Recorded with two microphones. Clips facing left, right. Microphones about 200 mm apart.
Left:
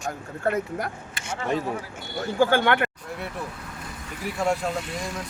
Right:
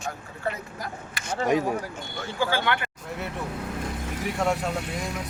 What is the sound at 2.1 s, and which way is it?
Speech, 50° left (ahead or behind).